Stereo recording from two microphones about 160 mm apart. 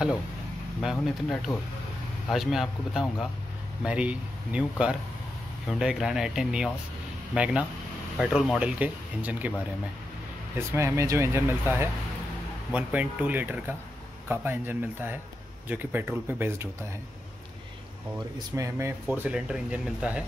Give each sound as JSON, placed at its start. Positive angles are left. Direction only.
{"t": 0.7, "sound": "speech", "side_deg": 0}
{"t": 10.7, "sound": "speech", "side_deg": -15}
{"t": 18.6, "sound": "speech", "side_deg": -15}